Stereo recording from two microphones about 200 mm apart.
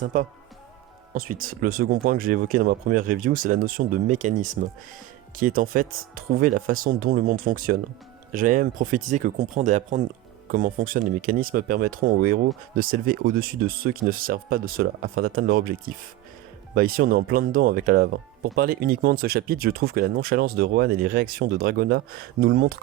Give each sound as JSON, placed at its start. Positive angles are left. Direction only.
{"t": 0.0, "sound": "speech", "side_deg": -40}
{"t": 16.7, "sound": "speech", "side_deg": -45}